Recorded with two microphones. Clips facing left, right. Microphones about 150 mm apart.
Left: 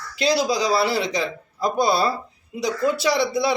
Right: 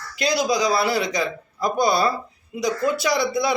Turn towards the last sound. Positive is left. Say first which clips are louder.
# left 1 dB
turn(degrees=30)  # may be behind; listen again after turning